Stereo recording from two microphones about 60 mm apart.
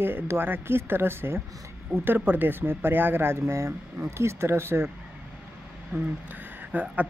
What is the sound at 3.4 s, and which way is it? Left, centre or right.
Speech, right.